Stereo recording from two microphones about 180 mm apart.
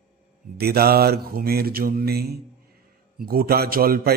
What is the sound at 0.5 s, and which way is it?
Mantra, 60° right (ahead or behind).